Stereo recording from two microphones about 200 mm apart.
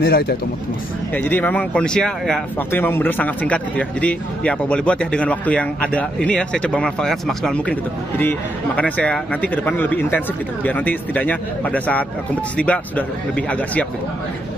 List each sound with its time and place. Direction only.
0.0 s speech: 50° left (ahead or behind)
1.1 s speech: 10° left (ahead or behind)